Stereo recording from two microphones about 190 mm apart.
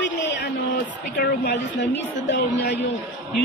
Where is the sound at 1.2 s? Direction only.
60° left (ahead or behind).